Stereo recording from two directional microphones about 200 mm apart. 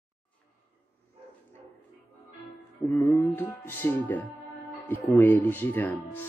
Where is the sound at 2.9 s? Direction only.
15° left (ahead or behind).